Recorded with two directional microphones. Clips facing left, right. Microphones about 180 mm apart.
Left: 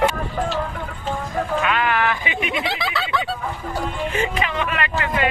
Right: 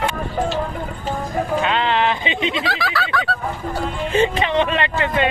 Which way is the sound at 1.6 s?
25° right (ahead or behind).